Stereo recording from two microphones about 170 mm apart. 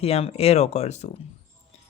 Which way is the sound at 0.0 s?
35° left (ahead or behind).